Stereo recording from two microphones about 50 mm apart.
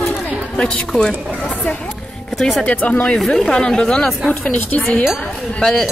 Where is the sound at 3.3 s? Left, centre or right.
Centre.